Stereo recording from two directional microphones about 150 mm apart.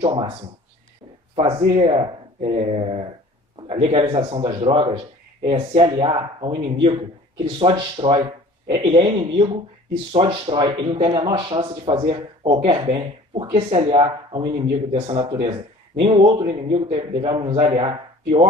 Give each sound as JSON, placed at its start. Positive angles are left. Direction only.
{"t": 0.0, "sound": "speech", "side_deg": -35}
{"t": 1.3, "sound": "a man's voice", "side_deg": -40}